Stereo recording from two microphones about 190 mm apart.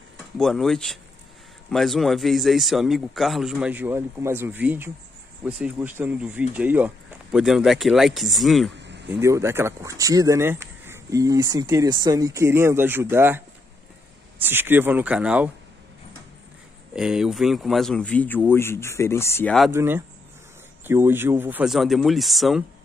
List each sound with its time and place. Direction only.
0.4 s speech: centre (ahead or behind)
8.7 s a sound: 65° right (ahead or behind)
9.2 s speech: 15° right (ahead or behind)
14.4 s speech: 10° right (ahead or behind)
16.9 s a man's voice: 5° right (ahead or behind); by 19.5 s 15° left (ahead or behind)
19.7 s speech: 10° right (ahead or behind)